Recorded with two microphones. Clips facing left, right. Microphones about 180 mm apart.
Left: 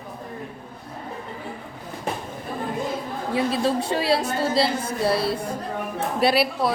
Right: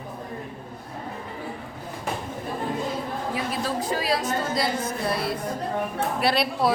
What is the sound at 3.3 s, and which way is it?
A woman's voice, 30° left (ahead or behind).